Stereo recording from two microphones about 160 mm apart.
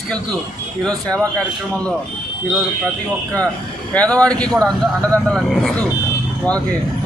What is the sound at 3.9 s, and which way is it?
Speech, 10° left (ahead or behind).